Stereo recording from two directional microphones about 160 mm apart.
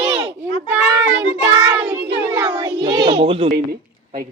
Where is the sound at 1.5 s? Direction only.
20° right (ahead or behind).